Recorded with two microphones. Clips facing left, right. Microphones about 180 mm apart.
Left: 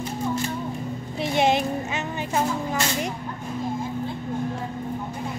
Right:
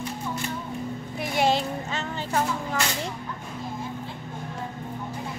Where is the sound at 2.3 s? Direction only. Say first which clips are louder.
Left 2 dB; 15° left (ahead or behind).